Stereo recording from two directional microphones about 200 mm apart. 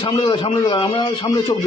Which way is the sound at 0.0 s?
25° left (ahead or behind).